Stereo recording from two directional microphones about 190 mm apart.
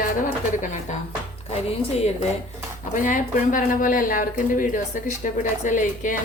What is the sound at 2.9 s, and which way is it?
Speech, 45° left (ahead or behind).